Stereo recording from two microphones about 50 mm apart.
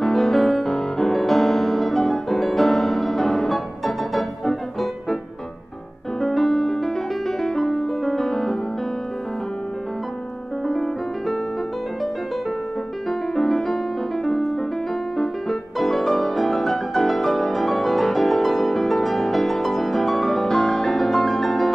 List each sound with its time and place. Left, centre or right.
0.0 s music: centre
6.2 s music: centre
10.7 s music: centre
13.4 s music: centre
15.8 s music: centre